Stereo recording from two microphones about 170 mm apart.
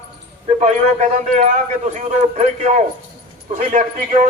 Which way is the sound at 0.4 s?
40° right (ahead or behind).